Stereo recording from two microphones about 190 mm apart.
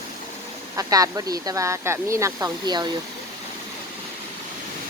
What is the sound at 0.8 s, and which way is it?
Speech, 20° right (ahead or behind).